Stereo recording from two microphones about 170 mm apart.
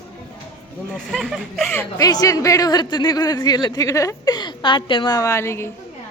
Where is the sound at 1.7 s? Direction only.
15° left (ahead or behind).